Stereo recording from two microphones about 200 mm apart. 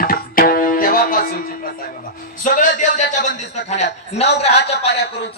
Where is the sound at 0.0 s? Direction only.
45° left (ahead or behind).